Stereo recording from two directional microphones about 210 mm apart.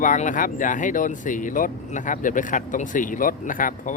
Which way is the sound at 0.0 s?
40° left (ahead or behind).